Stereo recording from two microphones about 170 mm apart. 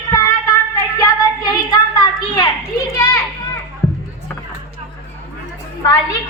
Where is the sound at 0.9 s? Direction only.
20° left (ahead or behind).